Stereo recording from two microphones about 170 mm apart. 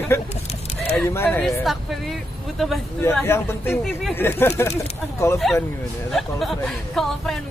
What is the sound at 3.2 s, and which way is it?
Speech, 15° left (ahead or behind).